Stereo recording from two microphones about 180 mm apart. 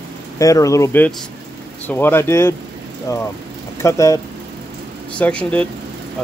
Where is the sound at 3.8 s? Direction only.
15° left (ahead or behind).